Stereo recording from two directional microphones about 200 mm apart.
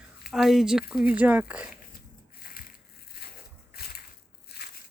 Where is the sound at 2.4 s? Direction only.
45° left (ahead or behind).